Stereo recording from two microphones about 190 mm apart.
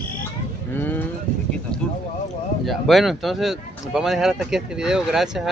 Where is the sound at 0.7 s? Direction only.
10° left (ahead or behind).